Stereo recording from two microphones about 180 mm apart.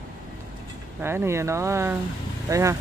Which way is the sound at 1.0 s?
15° right (ahead or behind).